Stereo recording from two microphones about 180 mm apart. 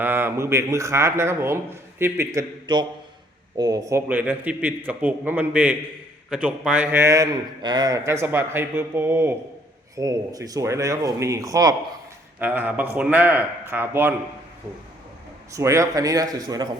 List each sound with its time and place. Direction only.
0.0 s a man's voice: 10° right (ahead or behind)
15.5 s a man's voice: 15° right (ahead or behind)